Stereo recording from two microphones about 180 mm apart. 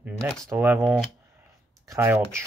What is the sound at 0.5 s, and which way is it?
Speech, 10° right (ahead or behind).